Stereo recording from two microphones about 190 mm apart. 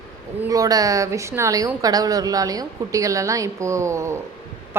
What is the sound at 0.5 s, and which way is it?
A woman's voice, 20° right (ahead or behind).